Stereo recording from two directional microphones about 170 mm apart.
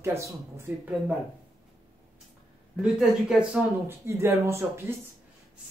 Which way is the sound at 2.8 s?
Centre (ahead or behind).